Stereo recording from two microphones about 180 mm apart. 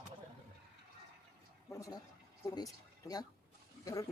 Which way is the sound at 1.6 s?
20° left (ahead or behind).